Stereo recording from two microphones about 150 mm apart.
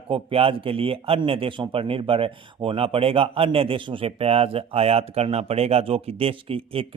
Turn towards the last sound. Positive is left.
turn(degrees=-40)  # may be behind; listen again after turning